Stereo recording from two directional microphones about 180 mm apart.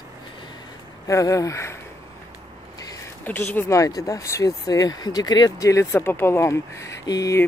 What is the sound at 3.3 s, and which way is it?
Speech, 10° left (ahead or behind).